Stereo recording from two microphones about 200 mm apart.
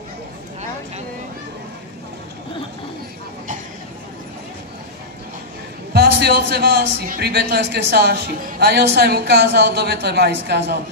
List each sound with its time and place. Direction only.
5.9 s a man's voice: 50° right (ahead or behind)